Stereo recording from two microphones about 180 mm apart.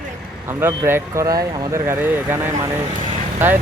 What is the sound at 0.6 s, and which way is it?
Speech, 10° right (ahead or behind).